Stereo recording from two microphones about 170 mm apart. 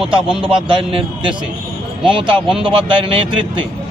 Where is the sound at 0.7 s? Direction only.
30° right (ahead or behind).